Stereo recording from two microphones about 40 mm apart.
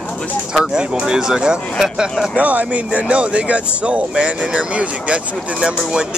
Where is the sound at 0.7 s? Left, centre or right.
Right.